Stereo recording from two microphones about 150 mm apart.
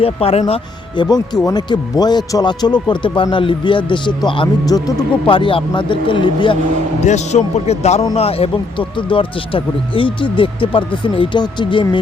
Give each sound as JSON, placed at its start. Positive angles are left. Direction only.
{"t": 0.0, "sound": "speech", "side_deg": 40}
{"t": 1.5, "sound": "speech", "side_deg": 25}
{"t": 7.0, "sound": "a man's voice", "side_deg": 50}